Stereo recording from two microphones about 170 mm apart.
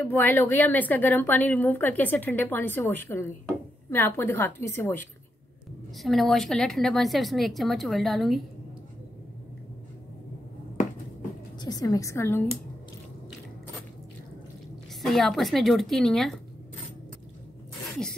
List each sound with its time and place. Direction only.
0.0 s a woman's voice: 10° left (ahead or behind)
5.9 s a woman's voice: centre (ahead or behind)
11.6 s a woman's voice: 20° left (ahead or behind)
15.0 s a woman's voice: centre (ahead or behind)